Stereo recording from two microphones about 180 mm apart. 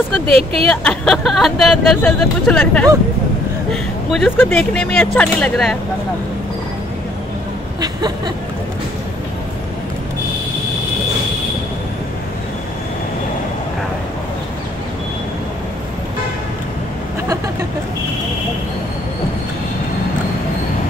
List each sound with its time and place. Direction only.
0.4 s speech: 30° right (ahead or behind)
0.7 s speech: 5° left (ahead or behind)